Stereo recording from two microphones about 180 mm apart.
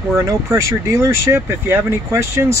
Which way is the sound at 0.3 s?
15° right (ahead or behind).